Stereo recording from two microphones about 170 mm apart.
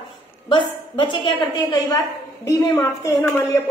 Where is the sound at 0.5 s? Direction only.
30° left (ahead or behind).